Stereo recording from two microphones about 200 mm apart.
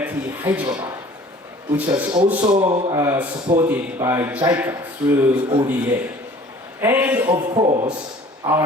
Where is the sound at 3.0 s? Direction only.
10° right (ahead or behind).